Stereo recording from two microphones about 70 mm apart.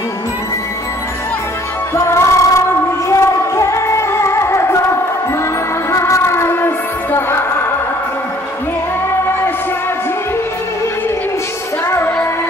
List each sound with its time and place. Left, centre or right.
2.0 s music: left
5.9 s music: left